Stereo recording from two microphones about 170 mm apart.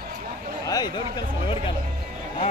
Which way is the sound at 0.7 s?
25° left (ahead or behind).